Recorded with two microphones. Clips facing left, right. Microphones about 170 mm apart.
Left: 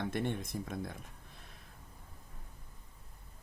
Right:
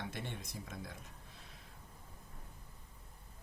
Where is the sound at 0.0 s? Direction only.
55° left (ahead or behind).